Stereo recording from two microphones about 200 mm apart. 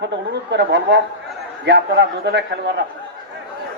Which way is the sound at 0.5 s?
60° right (ahead or behind).